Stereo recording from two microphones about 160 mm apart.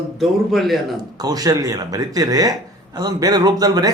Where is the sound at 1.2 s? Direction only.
25° right (ahead or behind).